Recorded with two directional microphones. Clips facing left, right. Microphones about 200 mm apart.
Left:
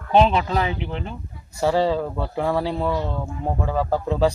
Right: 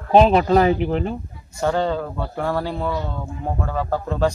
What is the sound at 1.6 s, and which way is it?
Speech, 5° left (ahead or behind).